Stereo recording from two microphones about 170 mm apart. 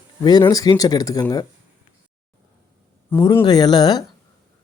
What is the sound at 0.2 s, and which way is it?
Speech, 25° left (ahead or behind).